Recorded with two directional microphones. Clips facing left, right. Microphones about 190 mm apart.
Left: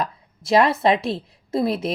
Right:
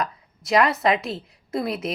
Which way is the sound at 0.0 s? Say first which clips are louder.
Left 1 dB; 30° left (ahead or behind).